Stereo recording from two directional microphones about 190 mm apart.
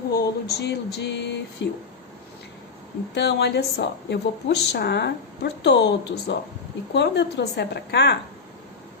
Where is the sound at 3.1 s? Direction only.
60° left (ahead or behind).